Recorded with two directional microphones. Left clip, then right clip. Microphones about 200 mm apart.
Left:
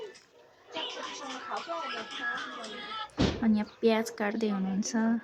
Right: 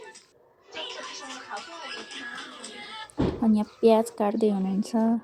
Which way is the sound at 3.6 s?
10° right (ahead or behind).